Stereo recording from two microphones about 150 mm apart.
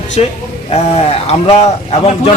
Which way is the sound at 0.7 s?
45° left (ahead or behind).